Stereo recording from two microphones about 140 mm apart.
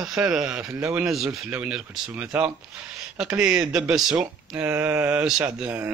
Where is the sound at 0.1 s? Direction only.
5° right (ahead or behind).